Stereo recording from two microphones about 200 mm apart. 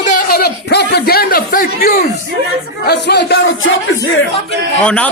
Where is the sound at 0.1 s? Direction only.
50° left (ahead or behind).